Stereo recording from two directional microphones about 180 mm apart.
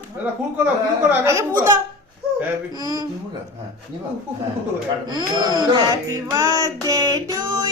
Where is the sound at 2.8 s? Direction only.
20° right (ahead or behind).